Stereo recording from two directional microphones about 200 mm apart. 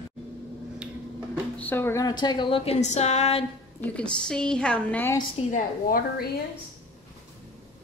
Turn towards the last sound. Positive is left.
turn(degrees=50)  # may be behind; listen again after turning